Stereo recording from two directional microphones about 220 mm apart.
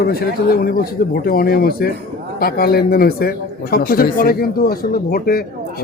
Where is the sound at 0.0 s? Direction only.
45° left (ahead or behind).